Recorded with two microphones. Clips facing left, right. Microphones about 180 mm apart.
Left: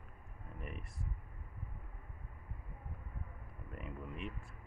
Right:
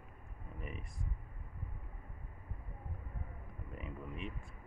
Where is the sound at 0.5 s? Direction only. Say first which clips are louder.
Right 1 dB; centre (ahead or behind).